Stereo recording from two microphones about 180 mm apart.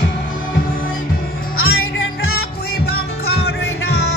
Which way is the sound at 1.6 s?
55° left (ahead or behind).